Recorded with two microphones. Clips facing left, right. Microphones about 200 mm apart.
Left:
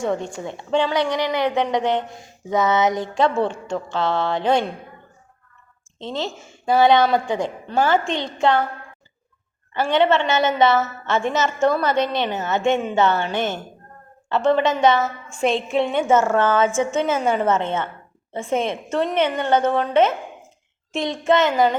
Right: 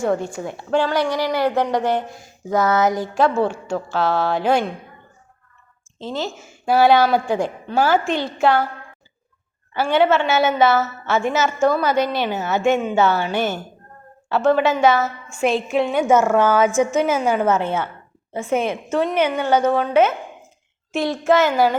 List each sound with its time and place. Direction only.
0.0 s a woman's voice: 5° right (ahead or behind)
6.0 s a woman's voice: 5° right (ahead or behind)
9.7 s a woman's voice: 5° right (ahead or behind)
16.7 s a woman's voice: 25° left (ahead or behind)
17.0 s a woman's voice: 10° right (ahead or behind)
18.9 s a woman's voice: 5° right (ahead or behind)